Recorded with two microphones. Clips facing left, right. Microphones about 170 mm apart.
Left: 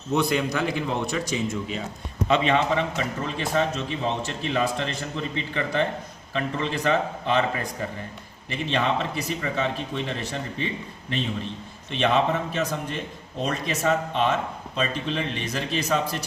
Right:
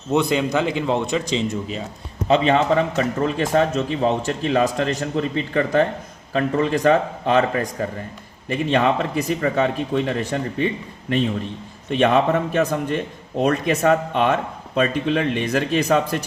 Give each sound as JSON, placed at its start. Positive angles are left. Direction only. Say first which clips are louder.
{"t": 0.1, "sound": "a man's voice", "louder": "right 4 dB", "side_deg": -20}
{"t": 2.2, "sound": "a man's voice", "louder": "right 5 dB", "side_deg": -35}
{"t": 11.9, "sound": "a man's voice", "louder": "right 5 dB", "side_deg": -50}